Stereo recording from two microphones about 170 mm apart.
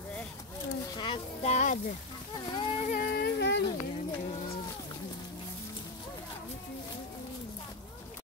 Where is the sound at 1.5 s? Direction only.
50° left (ahead or behind).